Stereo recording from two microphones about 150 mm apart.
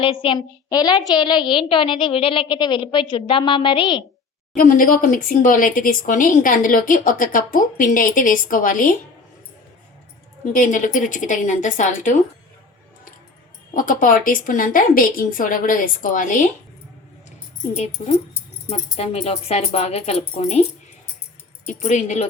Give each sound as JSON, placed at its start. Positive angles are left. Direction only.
{"t": 0.0, "sound": "a woman's voice", "side_deg": 35}
{"t": 4.5, "sound": "speech", "side_deg": 65}
{"t": 10.4, "sound": "speech", "side_deg": 60}
{"t": 13.7, "sound": "speech", "side_deg": 65}
{"t": 18.0, "sound": "speech", "side_deg": 60}
{"t": 18.7, "sound": "speech", "side_deg": 40}
{"t": 21.7, "sound": "speech", "side_deg": 55}